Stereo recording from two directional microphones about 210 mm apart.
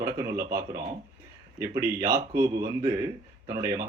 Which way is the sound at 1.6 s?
15° right (ahead or behind).